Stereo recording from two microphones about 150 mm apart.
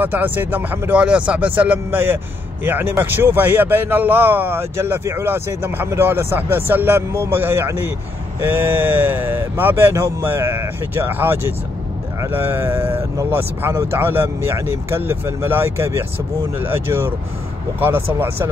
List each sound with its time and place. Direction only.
0.0 s speech: 10° right (ahead or behind)